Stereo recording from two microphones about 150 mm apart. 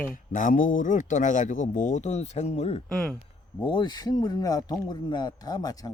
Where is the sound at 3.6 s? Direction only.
30° left (ahead or behind).